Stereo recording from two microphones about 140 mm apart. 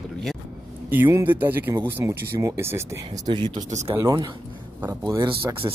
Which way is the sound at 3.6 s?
55° right (ahead or behind).